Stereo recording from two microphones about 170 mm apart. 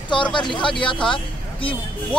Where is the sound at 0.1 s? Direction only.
30° left (ahead or behind).